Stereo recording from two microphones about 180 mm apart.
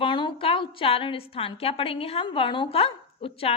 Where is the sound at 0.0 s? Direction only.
25° left (ahead or behind).